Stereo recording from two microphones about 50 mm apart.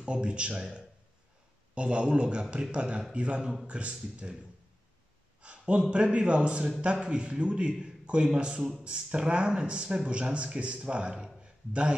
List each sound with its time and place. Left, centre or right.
0.0 s speech: centre
5.4 s a man's voice: right
11.4 s a sound: right